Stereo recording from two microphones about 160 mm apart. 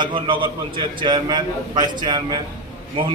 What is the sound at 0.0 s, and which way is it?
A man's voice, 30° right (ahead or behind).